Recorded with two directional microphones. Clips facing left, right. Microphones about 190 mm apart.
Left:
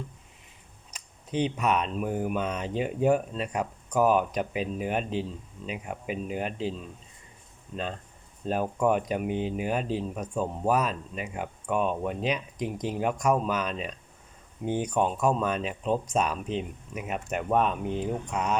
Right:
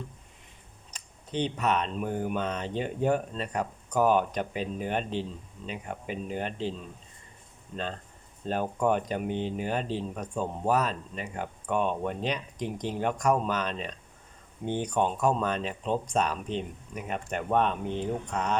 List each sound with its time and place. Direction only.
0.9 s speech: 10° left (ahead or behind)
8.4 s speech: 5° left (ahead or behind)